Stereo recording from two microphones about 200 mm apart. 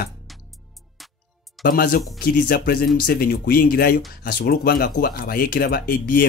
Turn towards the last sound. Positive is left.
turn(degrees=45)  # may be behind; listen again after turning